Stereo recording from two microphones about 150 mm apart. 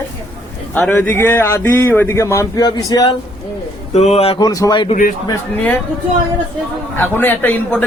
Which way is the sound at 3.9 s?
45° left (ahead or behind).